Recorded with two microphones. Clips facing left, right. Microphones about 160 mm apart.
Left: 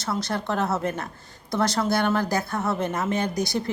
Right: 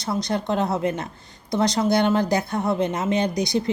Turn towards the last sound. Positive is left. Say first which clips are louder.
# right 3 dB
turn(degrees=-20)  # may be behind; listen again after turning